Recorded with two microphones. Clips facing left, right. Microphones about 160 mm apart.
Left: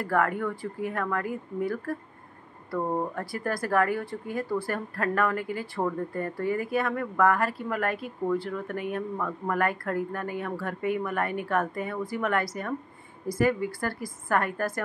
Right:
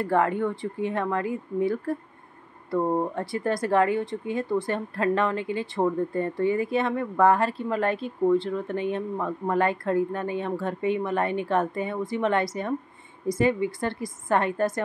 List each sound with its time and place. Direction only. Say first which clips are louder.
0.0 s speech: right 3 dB; 25° right (ahead or behind)
2.7 s speech: right 4 dB; 15° right (ahead or behind)
3.2 s speech: right 4 dB; 25° right (ahead or behind)